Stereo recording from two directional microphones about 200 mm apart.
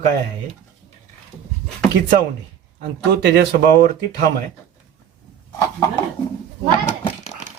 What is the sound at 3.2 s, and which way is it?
Speech, 60° right (ahead or behind).